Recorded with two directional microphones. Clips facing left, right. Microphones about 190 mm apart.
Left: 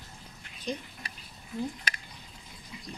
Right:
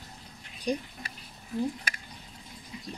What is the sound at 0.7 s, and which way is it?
Speech, 10° right (ahead or behind).